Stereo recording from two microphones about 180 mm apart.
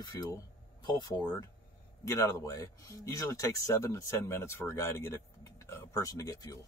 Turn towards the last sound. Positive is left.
turn(degrees=20)  # may be behind; listen again after turning